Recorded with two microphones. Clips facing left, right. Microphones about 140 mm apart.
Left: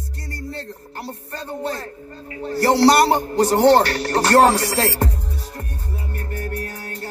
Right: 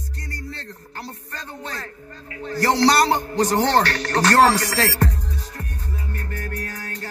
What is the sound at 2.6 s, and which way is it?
A man's voice, 10° left (ahead or behind).